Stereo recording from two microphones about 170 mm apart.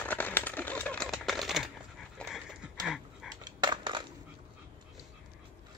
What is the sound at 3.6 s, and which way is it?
Crushing, 25° right (ahead or behind).